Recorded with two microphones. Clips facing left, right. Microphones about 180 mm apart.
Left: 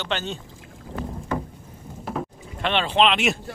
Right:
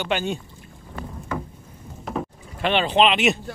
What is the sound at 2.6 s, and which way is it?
Speech, 5° right (ahead or behind).